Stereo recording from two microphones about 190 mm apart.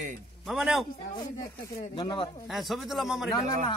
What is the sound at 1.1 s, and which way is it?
Speech, 20° left (ahead or behind).